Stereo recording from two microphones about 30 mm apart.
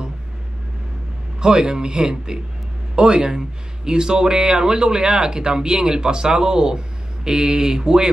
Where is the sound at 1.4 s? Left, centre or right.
Right.